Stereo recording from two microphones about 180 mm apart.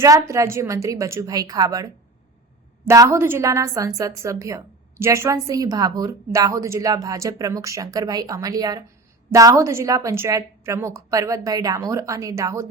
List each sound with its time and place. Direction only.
0.0 s a woman's voice: 15° right (ahead or behind)